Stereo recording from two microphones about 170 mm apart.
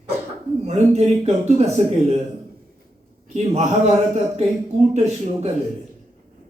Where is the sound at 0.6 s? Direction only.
40° right (ahead or behind).